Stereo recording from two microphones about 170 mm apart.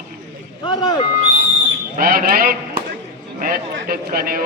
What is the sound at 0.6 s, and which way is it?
Speech, 25° left (ahead or behind).